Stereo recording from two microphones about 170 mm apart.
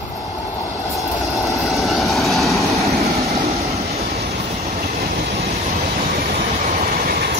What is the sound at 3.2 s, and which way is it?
Vehicle, 40° right (ahead or behind).